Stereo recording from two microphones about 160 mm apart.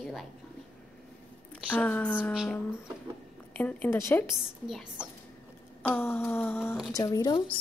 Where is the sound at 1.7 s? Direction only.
10° left (ahead or behind).